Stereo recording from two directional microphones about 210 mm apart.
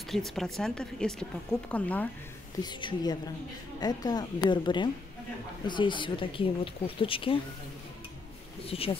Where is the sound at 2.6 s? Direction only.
20° left (ahead or behind).